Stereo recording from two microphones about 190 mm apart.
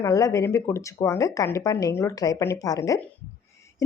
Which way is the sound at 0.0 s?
15° left (ahead or behind).